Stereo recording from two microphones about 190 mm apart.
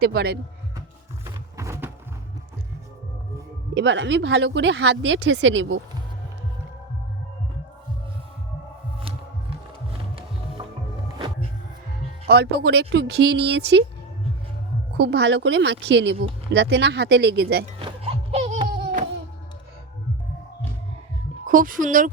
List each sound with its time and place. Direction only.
0.0 s speech: 55° right (ahead or behind)
1.2 s a sound: 15° right (ahead or behind)
3.8 s speech: 70° right (ahead or behind)
9.0 s music: 30° right (ahead or behind)
10.6 s music: 20° right (ahead or behind)
12.3 s speech: 60° right (ahead or behind)
14.9 s speech: 65° right (ahead or behind)
17.7 s music: 30° right (ahead or behind)
18.8 s a sound: 45° right (ahead or behind)
21.4 s speech: 45° right (ahead or behind)